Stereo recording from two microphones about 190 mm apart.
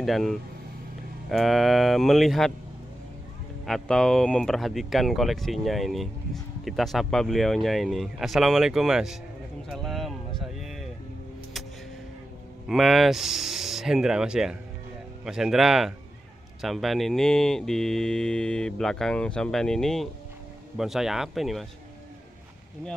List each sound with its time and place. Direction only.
0.0 s speech: centre (ahead or behind)
3.6 s speech: centre (ahead or behind)
9.7 s a sound: centre (ahead or behind)
12.6 s speech: centre (ahead or behind)